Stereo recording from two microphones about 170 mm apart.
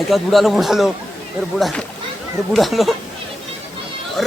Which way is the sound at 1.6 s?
5° left (ahead or behind).